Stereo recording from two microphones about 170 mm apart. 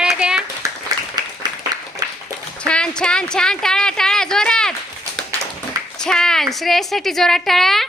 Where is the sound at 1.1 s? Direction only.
25° right (ahead or behind).